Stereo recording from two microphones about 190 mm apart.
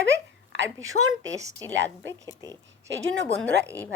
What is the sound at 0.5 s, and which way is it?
Speech, 80° right.